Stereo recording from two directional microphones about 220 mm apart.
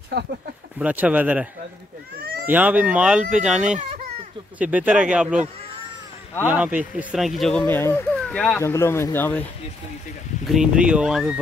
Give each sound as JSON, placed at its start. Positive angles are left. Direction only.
{"t": 0.7, "sound": "speech", "side_deg": -5}
{"t": 2.1, "sound": "cat", "side_deg": -45}
{"t": 2.4, "sound": "speech", "side_deg": -5}
{"t": 10.4, "sound": "speech", "side_deg": 0}